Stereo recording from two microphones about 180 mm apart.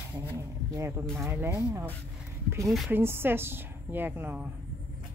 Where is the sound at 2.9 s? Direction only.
15° right (ahead or behind).